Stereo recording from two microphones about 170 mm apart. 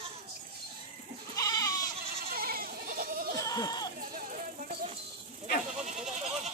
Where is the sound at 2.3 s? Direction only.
60° right (ahead or behind).